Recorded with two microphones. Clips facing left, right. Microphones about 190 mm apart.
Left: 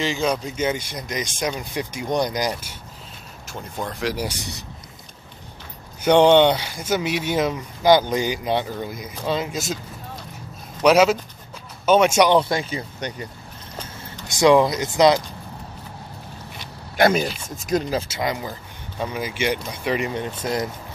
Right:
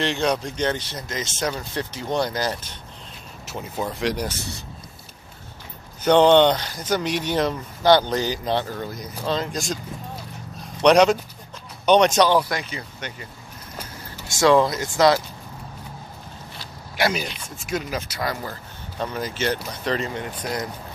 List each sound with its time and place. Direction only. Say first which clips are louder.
0.0 s speech: even; centre (ahead or behind)
3.4 s speech: right 2 dB; 5° right (ahead or behind); by 4.6 s 15° left (ahead or behind)
6.0 s speech: left 1 dB; 10° left (ahead or behind)
10.8 s speech: even; 5° left (ahead or behind)
12.3 s speech: left 3 dB; 25° left (ahead or behind)
14.2 s speech: left 2 dB; 15° left (ahead or behind)
16.9 s speech: left 6 dB; 50° left (ahead or behind)
17.6 s speech: left 5 dB; 35° left (ahead or behind)